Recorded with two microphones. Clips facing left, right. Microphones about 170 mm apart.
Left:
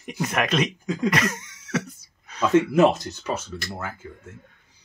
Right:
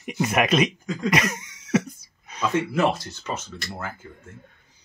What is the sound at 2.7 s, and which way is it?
Speech, 20° left (ahead or behind).